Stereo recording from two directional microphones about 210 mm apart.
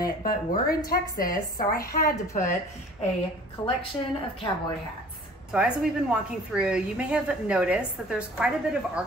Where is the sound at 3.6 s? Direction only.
20° left (ahead or behind).